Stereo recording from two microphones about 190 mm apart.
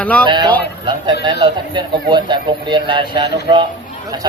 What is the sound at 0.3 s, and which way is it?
Speech, 25° right (ahead or behind).